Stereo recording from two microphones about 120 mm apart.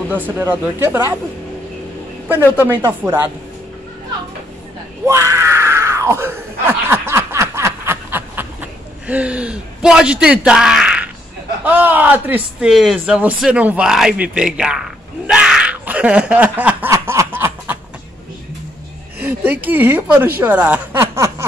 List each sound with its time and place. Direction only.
0.1 s speech: 15° right (ahead or behind)
2.5 s speech: 20° right (ahead or behind)
5.0 s screaming: 25° right (ahead or behind); by 11.1 s 5° right (ahead or behind)
11.6 s speech: 15° right (ahead or behind)
15.2 s a sound: 5° right (ahead or behind)
16.9 s snicker: 25° right (ahead or behind)
19.2 s speech: 15° right (ahead or behind)
21.1 s a sound: 25° right (ahead or behind)